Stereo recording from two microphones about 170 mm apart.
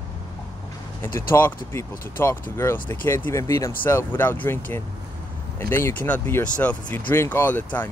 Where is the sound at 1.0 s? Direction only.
15° left (ahead or behind).